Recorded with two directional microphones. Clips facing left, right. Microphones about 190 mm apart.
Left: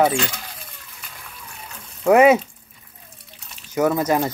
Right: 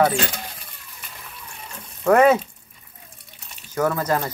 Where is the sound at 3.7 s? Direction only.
15° left (ahead or behind).